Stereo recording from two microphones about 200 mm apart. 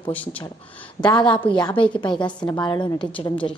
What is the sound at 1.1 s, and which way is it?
A woman's voice, 25° left (ahead or behind).